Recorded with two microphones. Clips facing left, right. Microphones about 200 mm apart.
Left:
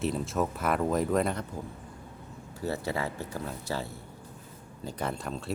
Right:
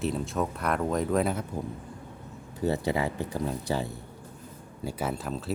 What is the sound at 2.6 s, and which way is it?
Speech, 15° right (ahead or behind).